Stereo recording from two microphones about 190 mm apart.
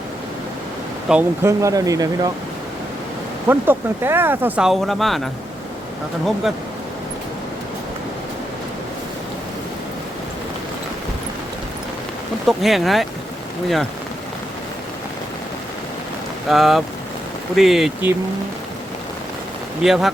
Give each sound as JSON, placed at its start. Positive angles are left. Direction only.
{"t": 1.0, "sound": "speech", "side_deg": -10}
{"t": 3.4, "sound": "speech", "side_deg": -10}
{"t": 12.5, "sound": "speech", "side_deg": 0}
{"t": 16.5, "sound": "speech", "side_deg": 0}
{"t": 19.8, "sound": "speech", "side_deg": 0}